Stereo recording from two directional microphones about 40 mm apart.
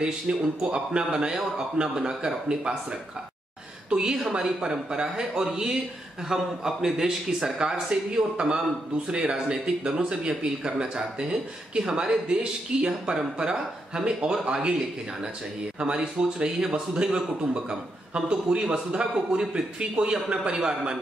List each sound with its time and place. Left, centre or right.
0.0 s a man's voice: right
3.9 s a man's voice: centre
15.8 s a man's voice: right